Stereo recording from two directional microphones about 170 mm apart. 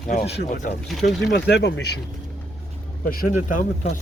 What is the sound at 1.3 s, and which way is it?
Speech, 80° left.